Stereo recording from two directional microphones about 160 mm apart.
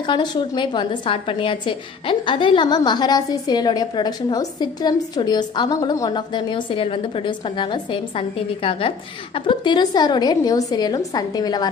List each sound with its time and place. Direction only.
0.0 s a woman's voice: 30° left (ahead or behind)